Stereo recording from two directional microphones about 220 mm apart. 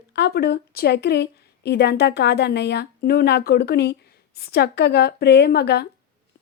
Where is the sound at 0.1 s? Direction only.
50° left (ahead or behind).